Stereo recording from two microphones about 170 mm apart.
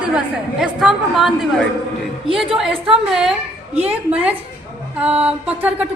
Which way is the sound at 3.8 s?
10° right (ahead or behind).